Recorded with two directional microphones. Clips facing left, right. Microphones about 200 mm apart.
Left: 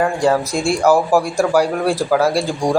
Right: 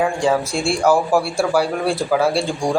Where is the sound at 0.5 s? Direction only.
40° left (ahead or behind).